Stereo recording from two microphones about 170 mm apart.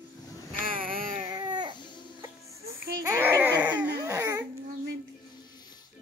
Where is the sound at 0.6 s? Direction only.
55° right (ahead or behind).